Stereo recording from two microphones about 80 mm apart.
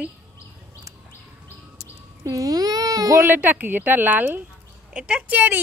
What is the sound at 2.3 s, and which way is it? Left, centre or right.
A child's voice, right.